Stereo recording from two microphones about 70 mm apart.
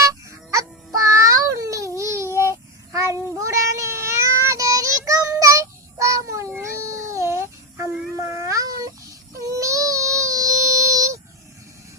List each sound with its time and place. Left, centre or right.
0.0 s honk: right
0.9 s child singing: right
6.6 s cat: right